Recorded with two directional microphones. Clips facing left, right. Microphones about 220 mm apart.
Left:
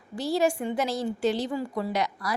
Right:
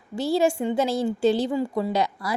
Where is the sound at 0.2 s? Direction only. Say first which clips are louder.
Right 3 dB; 30° right (ahead or behind).